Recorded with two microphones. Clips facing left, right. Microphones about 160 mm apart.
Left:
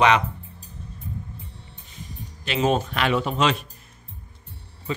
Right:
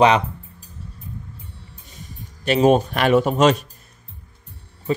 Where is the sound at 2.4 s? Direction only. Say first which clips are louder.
Right 7 dB; 45° right (ahead or behind).